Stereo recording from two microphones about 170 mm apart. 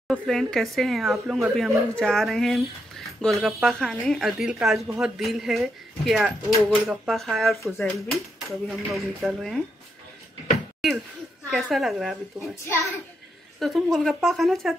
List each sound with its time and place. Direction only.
0.1 s speech: 5° left (ahead or behind)
7.6 s a child's voice: 15° left (ahead or behind)
8.1 s speech: centre (ahead or behind)
10.8 s speech: centre (ahead or behind)
12.4 s a child's voice: 15° left (ahead or behind)
13.6 s speech: centre (ahead or behind)